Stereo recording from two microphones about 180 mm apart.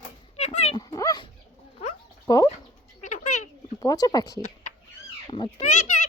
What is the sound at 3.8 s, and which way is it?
A child's voice, 20° left (ahead or behind).